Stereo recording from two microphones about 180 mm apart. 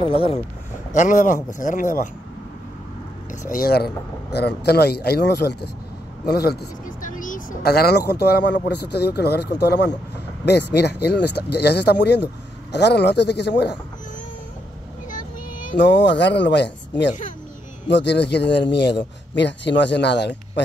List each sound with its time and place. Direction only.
0.0 s speech: 30° left (ahead or behind)
0.9 s a man's voice: 45° left (ahead or behind)
3.5 s speech: 60° left (ahead or behind)
6.2 s vehicle: 60° left (ahead or behind)
8.1 s a man's voice: 65° left (ahead or behind)
15.0 s child singing: 45° left (ahead or behind)
15.8 s a man's voice: 75° left (ahead or behind)
17.8 s a man's voice: 70° left (ahead or behind)